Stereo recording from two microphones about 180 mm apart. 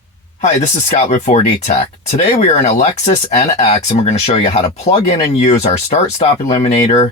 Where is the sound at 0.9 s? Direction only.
40° left (ahead or behind).